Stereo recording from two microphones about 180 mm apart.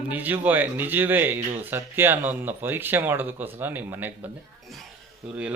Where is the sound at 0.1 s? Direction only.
10° right (ahead or behind).